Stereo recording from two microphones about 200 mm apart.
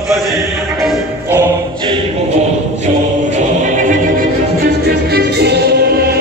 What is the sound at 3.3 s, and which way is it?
Music, 40° right (ahead or behind).